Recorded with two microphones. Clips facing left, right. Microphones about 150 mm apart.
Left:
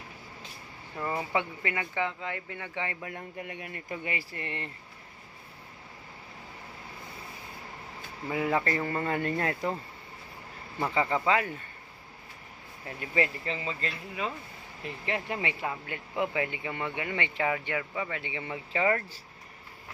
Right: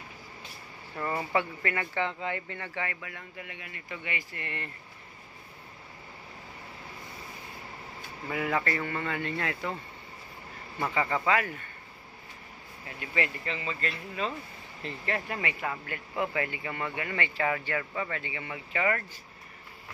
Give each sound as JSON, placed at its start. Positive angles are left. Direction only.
{"t": 0.9, "sound": "speech", "side_deg": 10}
{"t": 2.7, "sound": "speech", "side_deg": 20}
{"t": 3.0, "sound": "speech", "side_deg": 40}
{"t": 8.3, "sound": "speech", "side_deg": 25}
{"t": 11.2, "sound": "speech", "side_deg": 25}
{"t": 13.0, "sound": "speech", "side_deg": 30}
{"t": 14.8, "sound": "speech", "side_deg": 10}